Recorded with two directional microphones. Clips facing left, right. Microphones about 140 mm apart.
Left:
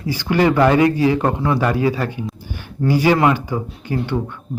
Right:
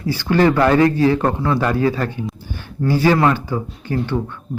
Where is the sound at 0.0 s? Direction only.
15° left (ahead or behind).